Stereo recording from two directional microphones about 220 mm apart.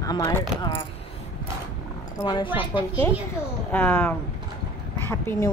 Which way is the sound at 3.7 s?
10° left (ahead or behind).